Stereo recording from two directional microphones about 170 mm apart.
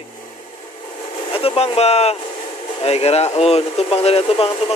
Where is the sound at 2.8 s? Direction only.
35° left (ahead or behind).